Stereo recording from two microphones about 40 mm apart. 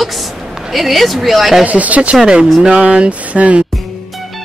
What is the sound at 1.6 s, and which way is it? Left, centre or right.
Speech, right.